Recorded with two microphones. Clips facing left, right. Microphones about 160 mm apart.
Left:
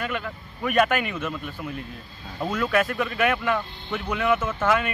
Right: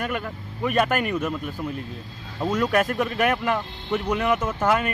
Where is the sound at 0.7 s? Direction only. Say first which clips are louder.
Even; 35° right (ahead or behind).